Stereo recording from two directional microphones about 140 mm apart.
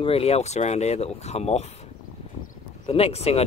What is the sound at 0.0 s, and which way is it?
Speech, 45° left (ahead or behind).